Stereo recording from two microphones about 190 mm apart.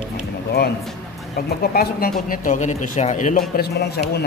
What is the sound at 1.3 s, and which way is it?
Speech, 55° left (ahead or behind).